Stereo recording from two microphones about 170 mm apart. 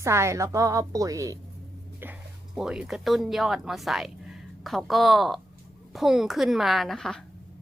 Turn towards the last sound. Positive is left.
turn(degrees=0)  # may be behind; listen again after turning